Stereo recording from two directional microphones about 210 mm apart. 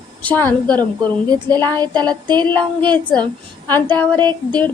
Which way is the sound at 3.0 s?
5° left (ahead or behind).